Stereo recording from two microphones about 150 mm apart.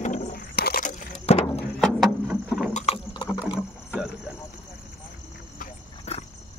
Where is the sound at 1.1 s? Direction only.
45° left (ahead or behind).